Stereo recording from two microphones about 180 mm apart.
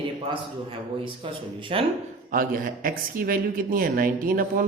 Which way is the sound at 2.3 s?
50° right (ahead or behind).